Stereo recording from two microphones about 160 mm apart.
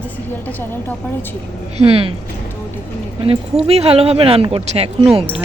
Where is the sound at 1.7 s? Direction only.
35° right (ahead or behind).